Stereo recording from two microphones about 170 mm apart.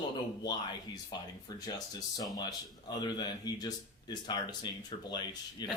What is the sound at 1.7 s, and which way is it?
Speech, 20° left (ahead or behind).